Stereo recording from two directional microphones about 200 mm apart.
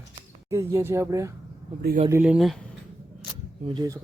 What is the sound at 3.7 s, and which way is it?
Speech, 20° right (ahead or behind).